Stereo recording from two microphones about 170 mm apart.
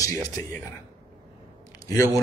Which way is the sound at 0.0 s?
20° left (ahead or behind).